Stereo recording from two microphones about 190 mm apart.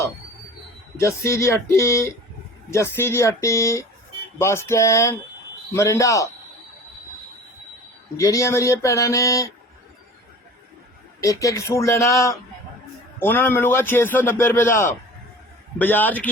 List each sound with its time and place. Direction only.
0.9 s a man's voice: 15° left (ahead or behind)
8.1 s a man's voice: 15° left (ahead or behind)
11.2 s a man's voice: 15° left (ahead or behind)